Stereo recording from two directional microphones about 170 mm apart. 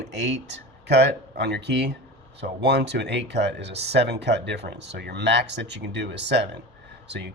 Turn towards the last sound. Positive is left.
turn(degrees=-85)